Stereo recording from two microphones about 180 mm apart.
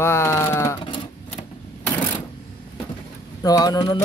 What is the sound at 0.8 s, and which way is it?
Sewing machine, 25° left (ahead or behind).